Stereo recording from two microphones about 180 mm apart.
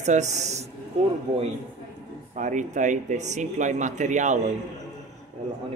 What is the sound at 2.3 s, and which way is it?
Speech, 45° right (ahead or behind).